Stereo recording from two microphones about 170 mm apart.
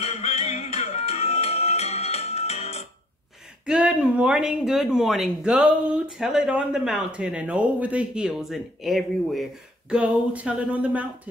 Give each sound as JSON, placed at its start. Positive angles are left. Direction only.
{"t": 0.0, "sound": "music", "side_deg": 40}
{"t": 3.6, "sound": "speech", "side_deg": -5}